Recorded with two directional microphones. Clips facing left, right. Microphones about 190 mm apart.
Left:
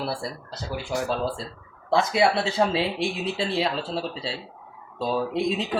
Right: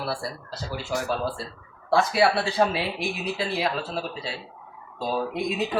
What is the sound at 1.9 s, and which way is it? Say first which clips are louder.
Speech: even; 20° left (ahead or behind).